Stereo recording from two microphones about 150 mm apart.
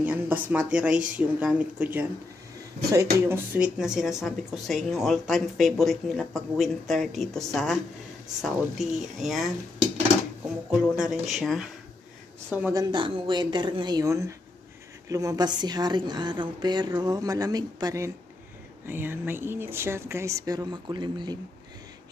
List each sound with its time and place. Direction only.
0.0 s a woman's voice: 10° right (ahead or behind)
3.5 s speech: 5° right (ahead or behind)
10.7 s speech: 5° right (ahead or behind)
12.7 s a woman's voice: 35° right (ahead or behind)